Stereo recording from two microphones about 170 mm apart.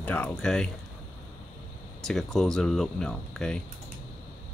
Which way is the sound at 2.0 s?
Centre (ahead or behind).